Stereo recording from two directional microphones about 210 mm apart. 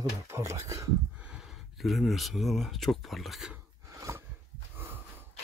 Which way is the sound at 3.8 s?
15° right (ahead or behind).